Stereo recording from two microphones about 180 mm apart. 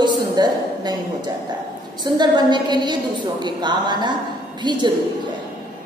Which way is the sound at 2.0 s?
25° right (ahead or behind).